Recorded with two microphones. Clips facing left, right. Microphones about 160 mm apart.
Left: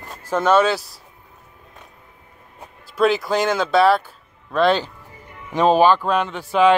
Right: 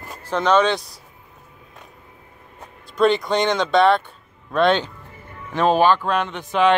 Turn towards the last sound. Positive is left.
turn(degrees=10)  # may be behind; listen again after turning